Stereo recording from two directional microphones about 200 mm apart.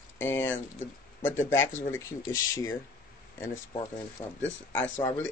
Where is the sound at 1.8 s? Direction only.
10° left (ahead or behind).